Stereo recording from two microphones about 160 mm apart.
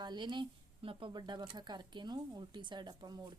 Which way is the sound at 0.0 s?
25° right (ahead or behind).